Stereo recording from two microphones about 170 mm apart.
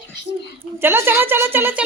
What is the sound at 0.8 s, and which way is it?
A woman's voice, 15° right (ahead or behind).